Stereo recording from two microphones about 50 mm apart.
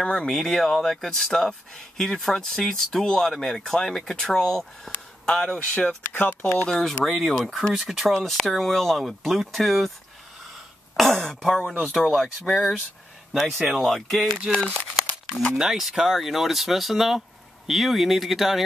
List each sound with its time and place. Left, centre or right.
0.0 s speech: centre
6.1 s speech: left
6.7 s speech: centre
11.0 s speech: centre
13.8 s speech: centre
15.5 s speech: centre